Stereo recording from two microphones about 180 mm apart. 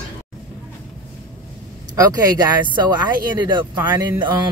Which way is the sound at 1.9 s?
20° right (ahead or behind).